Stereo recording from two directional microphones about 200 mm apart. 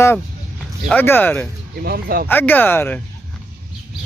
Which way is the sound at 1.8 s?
50° right (ahead or behind).